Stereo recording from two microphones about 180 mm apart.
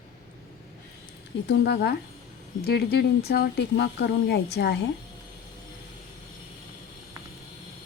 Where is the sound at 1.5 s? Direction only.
75° left (ahead or behind).